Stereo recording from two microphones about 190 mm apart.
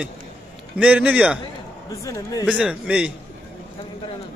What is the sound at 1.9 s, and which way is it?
Speech, 20° left (ahead or behind).